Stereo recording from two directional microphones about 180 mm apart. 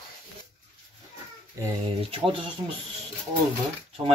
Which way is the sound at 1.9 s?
30° right (ahead or behind).